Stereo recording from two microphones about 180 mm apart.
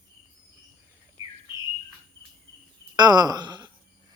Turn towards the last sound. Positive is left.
turn(degrees=-25)  # may be behind; listen again after turning